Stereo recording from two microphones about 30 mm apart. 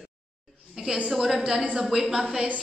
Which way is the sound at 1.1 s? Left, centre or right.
Centre.